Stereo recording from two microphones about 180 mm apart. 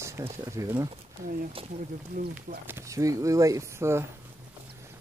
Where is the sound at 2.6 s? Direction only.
15° right (ahead or behind).